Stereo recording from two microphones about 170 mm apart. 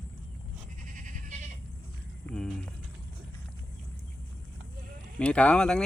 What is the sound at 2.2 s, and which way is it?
Speech, 5° left (ahead or behind).